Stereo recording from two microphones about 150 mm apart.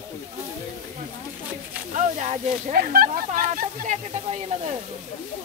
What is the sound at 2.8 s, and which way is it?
Speech, 75° right (ahead or behind).